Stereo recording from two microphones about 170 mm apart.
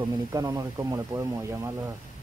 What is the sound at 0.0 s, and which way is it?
Speech, 20° right (ahead or behind).